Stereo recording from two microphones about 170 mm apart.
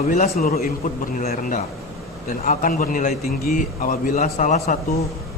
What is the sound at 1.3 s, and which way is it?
Speech, 50° left (ahead or behind).